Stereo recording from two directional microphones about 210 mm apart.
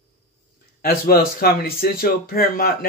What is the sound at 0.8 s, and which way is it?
A man's voice, 45° left (ahead or behind).